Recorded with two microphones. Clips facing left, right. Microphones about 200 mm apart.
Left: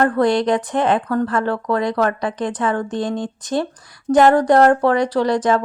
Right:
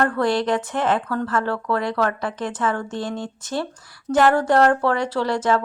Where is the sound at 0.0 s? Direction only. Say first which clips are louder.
Left 4 dB; 20° left (ahead or behind).